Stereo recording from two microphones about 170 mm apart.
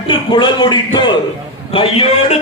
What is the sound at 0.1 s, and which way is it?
A man's voice, 30° left (ahead or behind).